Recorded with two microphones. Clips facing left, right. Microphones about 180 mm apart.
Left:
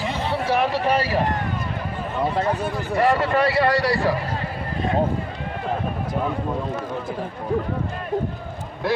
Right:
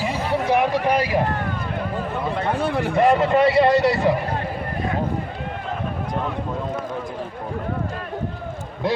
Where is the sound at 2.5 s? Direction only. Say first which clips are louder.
Right 3 dB; 70° right (ahead or behind).